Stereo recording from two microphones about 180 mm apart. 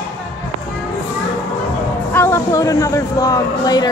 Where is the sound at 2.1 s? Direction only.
15° left (ahead or behind).